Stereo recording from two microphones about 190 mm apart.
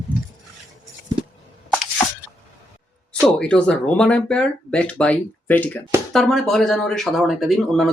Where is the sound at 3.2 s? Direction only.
5° left (ahead or behind).